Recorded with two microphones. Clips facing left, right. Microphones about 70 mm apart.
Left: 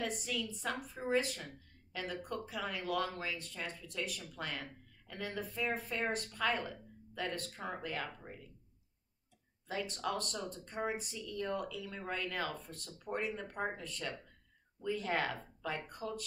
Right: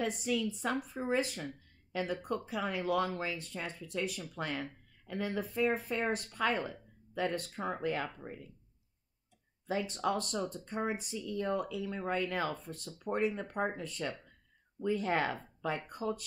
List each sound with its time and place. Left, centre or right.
0.0 s speech: right
9.7 s speech: right